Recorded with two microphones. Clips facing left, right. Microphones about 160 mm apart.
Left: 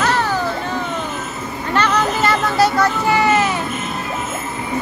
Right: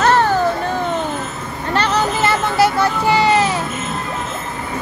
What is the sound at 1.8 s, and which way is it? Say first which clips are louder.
Vehicle: even; 30° right (ahead or behind).